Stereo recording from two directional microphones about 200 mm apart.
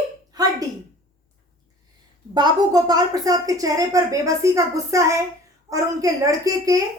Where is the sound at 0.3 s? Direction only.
20° right (ahead or behind).